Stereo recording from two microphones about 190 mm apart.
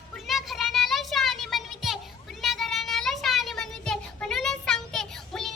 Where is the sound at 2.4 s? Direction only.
Centre (ahead or behind).